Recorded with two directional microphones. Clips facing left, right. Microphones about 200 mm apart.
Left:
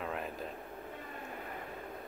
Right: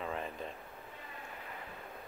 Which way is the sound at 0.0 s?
5° left (ahead or behind).